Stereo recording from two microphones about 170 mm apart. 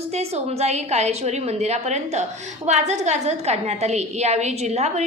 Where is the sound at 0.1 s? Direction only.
40° right (ahead or behind).